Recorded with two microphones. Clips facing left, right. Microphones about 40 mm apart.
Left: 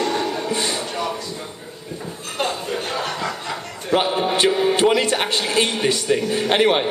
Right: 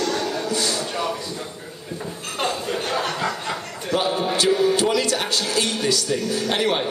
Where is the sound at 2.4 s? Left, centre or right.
Centre.